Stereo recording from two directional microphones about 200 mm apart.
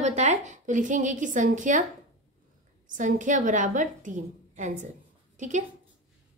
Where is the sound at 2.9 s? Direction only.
40° right (ahead or behind).